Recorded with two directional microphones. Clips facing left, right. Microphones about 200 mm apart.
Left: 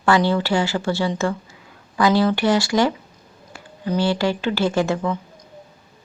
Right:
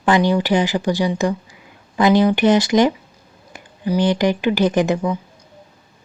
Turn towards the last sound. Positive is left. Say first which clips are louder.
# right 3 dB
turn(degrees=-15)  # may be behind; listen again after turning